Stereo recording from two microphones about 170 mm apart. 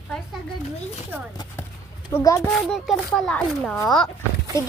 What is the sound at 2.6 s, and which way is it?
Speech, centre (ahead or behind).